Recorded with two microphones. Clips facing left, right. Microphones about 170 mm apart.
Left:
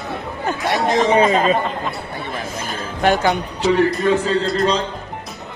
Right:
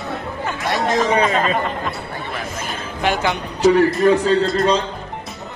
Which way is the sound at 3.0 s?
40° left (ahead or behind).